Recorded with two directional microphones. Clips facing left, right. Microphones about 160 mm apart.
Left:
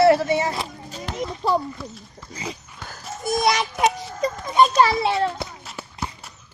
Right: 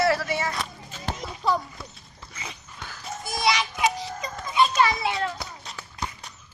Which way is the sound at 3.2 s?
50° left (ahead or behind).